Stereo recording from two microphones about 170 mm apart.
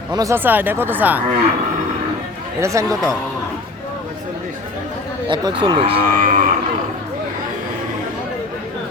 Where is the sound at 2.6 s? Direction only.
20° right (ahead or behind).